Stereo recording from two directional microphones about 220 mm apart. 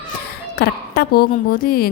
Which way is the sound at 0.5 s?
45° left (ahead or behind).